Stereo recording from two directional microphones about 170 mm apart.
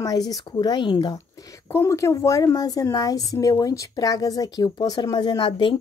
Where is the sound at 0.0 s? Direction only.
20° left (ahead or behind).